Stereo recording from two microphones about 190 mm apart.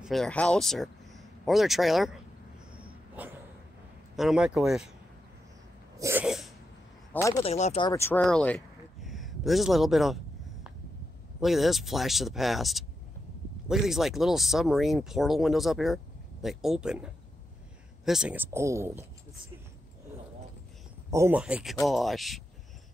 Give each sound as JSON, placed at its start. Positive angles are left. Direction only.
{"t": 0.0, "sound": "speech", "side_deg": 0}
{"t": 3.2, "sound": "dog", "side_deg": -10}
{"t": 4.2, "sound": "speech", "side_deg": -5}
{"t": 5.9, "sound": "sneeze", "side_deg": -15}
{"t": 6.2, "sound": "a sound", "side_deg": 0}
{"t": 7.2, "sound": "speech", "side_deg": 15}
{"t": 7.4, "sound": "speech", "side_deg": 35}
{"t": 7.8, "sound": "speech", "side_deg": 15}
{"t": 9.0, "sound": "a sound", "side_deg": 0}
{"t": 11.4, "sound": "speech", "side_deg": 0}
{"t": 21.1, "sound": "speech", "side_deg": -10}